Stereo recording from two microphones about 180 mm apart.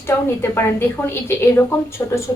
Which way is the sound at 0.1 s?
15° left (ahead or behind).